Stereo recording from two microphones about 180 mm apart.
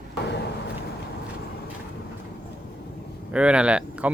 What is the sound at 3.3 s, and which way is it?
Speech, 5° right (ahead or behind).